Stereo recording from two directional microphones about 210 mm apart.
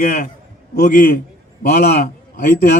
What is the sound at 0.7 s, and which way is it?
Speech, 50° left (ahead or behind).